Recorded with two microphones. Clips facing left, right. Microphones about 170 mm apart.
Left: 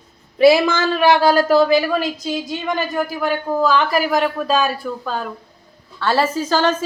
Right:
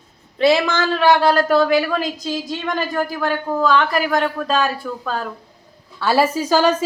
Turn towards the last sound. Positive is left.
turn(degrees=-10)  # may be behind; listen again after turning